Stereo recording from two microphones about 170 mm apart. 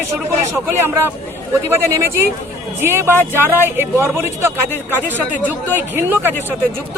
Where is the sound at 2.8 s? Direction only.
15° right (ahead or behind).